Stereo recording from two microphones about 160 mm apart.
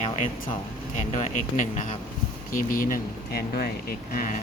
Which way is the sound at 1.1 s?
50° left (ahead or behind).